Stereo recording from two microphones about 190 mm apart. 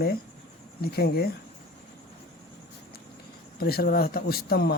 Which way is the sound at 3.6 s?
55° left (ahead or behind).